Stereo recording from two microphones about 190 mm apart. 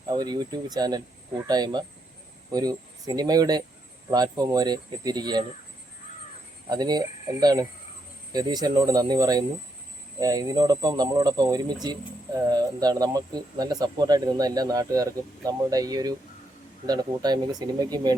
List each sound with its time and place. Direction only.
0.1 s speech: 20° right (ahead or behind)
6.7 s speech: 20° right (ahead or behind)